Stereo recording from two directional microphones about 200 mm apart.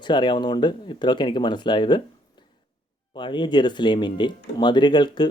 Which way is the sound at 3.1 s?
25° left (ahead or behind).